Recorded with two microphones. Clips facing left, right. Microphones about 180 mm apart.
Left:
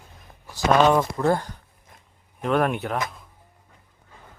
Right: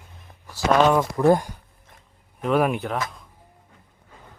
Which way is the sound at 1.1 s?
15° right (ahead or behind).